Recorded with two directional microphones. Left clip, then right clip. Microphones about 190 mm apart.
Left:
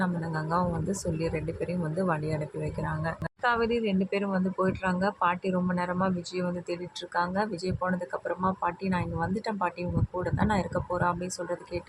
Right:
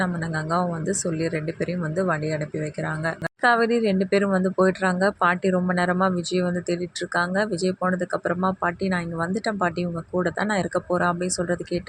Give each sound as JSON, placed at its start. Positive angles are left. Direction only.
{"t": 0.0, "sound": "speech", "side_deg": -20}